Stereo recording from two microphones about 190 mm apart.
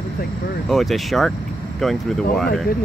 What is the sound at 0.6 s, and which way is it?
Speech, centre (ahead or behind).